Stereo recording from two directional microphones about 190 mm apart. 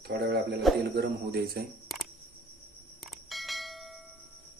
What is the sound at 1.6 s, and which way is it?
Speech, 55° right (ahead or behind).